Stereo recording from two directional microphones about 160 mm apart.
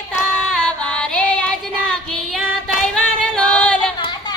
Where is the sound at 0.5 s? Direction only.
5° left (ahead or behind).